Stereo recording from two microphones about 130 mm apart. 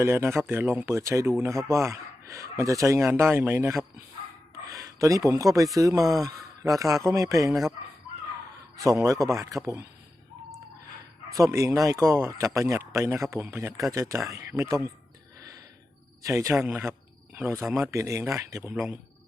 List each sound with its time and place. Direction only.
0.0 s speech: 20° right (ahead or behind)
8.8 s speech: 25° right (ahead or behind)
11.3 s speech: 25° right (ahead or behind)
16.2 s speech: 25° right (ahead or behind)
18.7 s speech: 10° right (ahead or behind)